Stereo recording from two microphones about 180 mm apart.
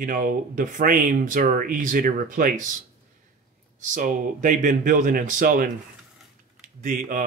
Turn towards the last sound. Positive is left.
turn(degrees=-45)  # may be behind; listen again after turning